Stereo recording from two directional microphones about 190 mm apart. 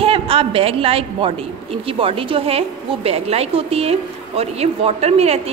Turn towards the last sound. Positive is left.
turn(degrees=-35)  # may be behind; listen again after turning